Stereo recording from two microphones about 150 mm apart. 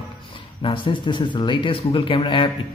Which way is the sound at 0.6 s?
35° left (ahead or behind).